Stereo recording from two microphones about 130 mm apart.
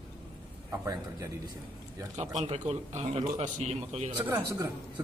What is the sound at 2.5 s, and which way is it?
Speech, 60° right (ahead or behind).